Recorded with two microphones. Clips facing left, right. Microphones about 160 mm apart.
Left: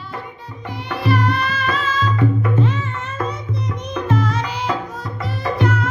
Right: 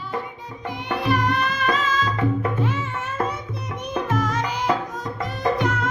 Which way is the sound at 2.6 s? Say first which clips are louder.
Left 4 dB; 10° right (ahead or behind).